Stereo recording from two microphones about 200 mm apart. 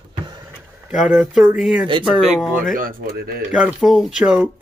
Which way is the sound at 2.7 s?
50° right (ahead or behind).